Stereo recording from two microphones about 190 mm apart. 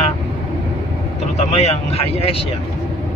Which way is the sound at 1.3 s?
35° left (ahead or behind).